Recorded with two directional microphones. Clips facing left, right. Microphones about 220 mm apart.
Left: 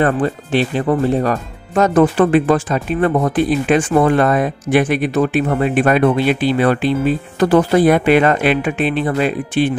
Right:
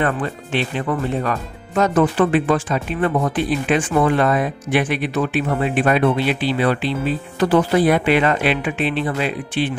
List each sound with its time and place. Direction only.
0.0 s speech: 40° left (ahead or behind)